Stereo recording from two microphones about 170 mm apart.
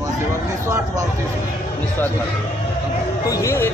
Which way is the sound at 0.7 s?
15° right (ahead or behind).